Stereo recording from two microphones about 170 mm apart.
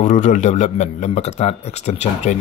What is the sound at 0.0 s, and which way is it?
Speech, 45° left (ahead or behind).